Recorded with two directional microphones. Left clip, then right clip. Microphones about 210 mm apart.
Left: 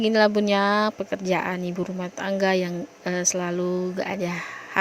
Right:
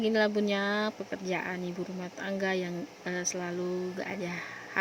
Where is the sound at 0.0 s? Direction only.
40° left (ahead or behind).